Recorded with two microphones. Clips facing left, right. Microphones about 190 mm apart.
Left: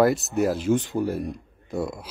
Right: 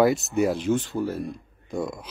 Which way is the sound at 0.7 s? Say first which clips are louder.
Left 2 dB; 15° left (ahead or behind).